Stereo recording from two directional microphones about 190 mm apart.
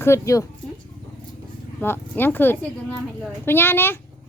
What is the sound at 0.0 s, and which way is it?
Speech, 15° left (ahead or behind).